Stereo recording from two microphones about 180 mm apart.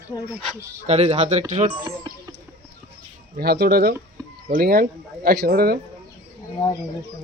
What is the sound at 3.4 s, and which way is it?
Speech, 60° right (ahead or behind).